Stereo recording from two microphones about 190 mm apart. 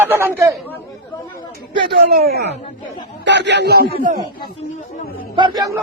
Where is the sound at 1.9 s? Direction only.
55° right (ahead or behind).